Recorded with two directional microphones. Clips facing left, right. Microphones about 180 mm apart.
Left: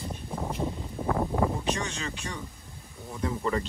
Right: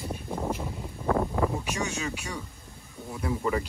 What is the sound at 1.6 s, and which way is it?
Speech, 10° right (ahead or behind).